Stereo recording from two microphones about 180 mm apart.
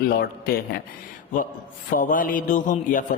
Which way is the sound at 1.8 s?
50° left (ahead or behind).